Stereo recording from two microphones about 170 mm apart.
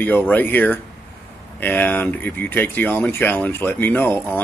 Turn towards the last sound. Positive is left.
turn(degrees=15)  # may be behind; listen again after turning